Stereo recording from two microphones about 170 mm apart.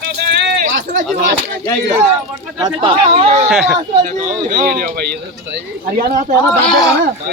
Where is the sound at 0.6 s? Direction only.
50° right (ahead or behind).